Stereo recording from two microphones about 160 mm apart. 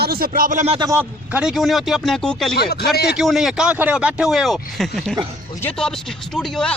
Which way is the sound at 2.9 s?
90° left.